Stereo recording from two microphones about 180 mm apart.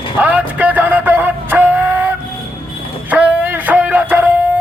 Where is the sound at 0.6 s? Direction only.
10° right (ahead or behind).